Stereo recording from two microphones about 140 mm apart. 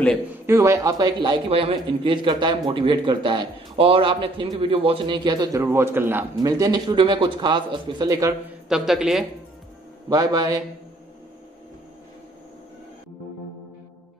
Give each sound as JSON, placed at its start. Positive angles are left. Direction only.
{"t": 0.5, "sound": "a man's voice", "side_deg": -25}
{"t": 5.6, "sound": "a man's voice", "side_deg": -15}
{"t": 8.6, "sound": "a man's voice", "side_deg": -5}
{"t": 10.0, "sound": "speech", "side_deg": -25}